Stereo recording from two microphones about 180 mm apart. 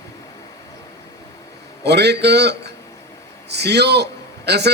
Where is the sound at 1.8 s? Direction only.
65° right (ahead or behind).